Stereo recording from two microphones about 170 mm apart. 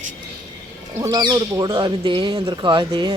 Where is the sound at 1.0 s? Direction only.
25° right (ahead or behind).